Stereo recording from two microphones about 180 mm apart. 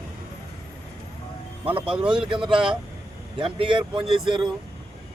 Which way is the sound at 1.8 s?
5° right (ahead or behind).